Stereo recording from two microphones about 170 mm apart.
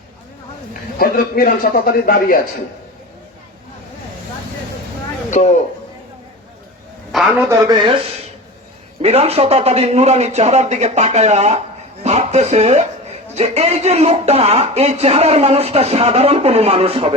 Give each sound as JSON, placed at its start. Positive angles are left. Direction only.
{"t": 0.9, "sound": "a man's voice", "side_deg": 60}
{"t": 5.3, "sound": "speech", "side_deg": 45}
{"t": 7.1, "sound": "a man's voice", "side_deg": 0}
{"t": 7.4, "sound": "speech", "side_deg": -20}
{"t": 9.0, "sound": "speech", "side_deg": -35}